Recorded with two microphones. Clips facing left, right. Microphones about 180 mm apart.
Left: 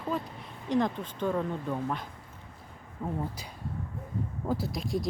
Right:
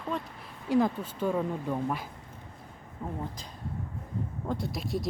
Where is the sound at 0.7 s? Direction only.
5° right (ahead or behind).